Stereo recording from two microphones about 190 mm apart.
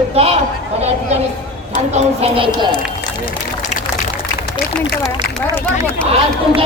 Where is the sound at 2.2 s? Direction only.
30° right (ahead or behind).